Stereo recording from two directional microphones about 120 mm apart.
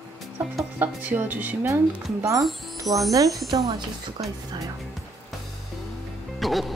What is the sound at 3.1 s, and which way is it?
Speech, 30° right (ahead or behind).